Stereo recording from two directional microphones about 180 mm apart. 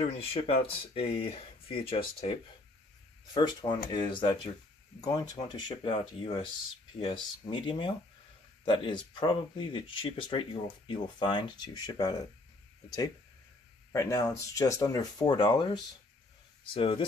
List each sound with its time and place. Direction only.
0.0 s speech: 35° left (ahead or behind)
3.3 s speech: 25° left (ahead or behind)
13.9 s speech: 15° left (ahead or behind)